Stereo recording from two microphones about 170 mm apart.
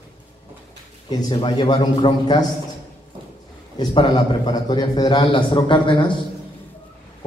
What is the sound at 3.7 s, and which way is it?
A man's voice, 25° left (ahead or behind).